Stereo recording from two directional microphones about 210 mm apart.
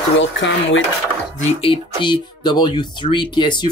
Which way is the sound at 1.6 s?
25° left (ahead or behind).